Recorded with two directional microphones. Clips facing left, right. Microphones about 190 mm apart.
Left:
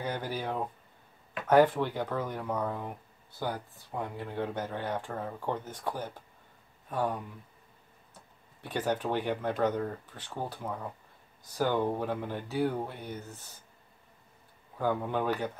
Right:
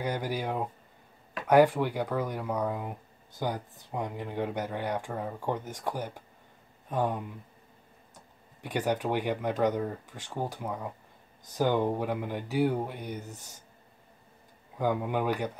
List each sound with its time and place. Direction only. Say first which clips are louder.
0.0 s speech: right 3 dB; 10° right (ahead or behind)
14.8 s speech: right 1 dB; 15° right (ahead or behind)